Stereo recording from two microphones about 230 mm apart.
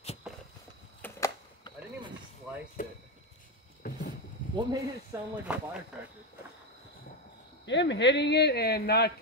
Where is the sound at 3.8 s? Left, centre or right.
Left.